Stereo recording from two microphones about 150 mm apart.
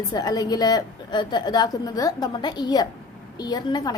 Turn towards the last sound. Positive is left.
turn(degrees=25)  # may be behind; listen again after turning